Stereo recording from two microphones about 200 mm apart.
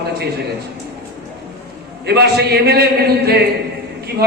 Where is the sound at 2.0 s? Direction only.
55° right (ahead or behind).